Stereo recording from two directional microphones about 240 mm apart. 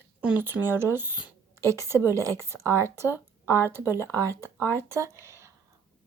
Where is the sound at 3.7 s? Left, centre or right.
Centre.